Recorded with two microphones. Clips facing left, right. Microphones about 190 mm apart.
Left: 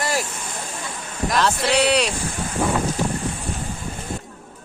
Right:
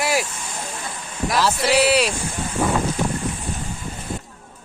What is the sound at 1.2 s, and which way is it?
Speech, 5° right (ahead or behind).